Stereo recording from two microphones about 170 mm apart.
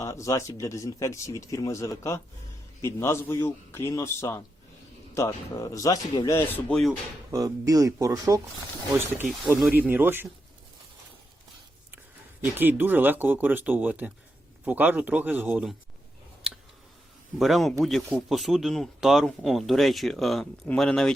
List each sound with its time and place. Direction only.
0.0 s speech: 20° left (ahead or behind)
6.7 s speech: 5° left (ahead or behind)
7.3 s speech: 20° right (ahead or behind)
9.5 s speech: 15° right (ahead or behind)
12.5 s speech: 10° right (ahead or behind)
17.3 s speech: centre (ahead or behind)